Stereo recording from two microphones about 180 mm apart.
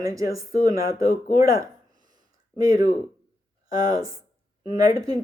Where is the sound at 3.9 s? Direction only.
20° right (ahead or behind).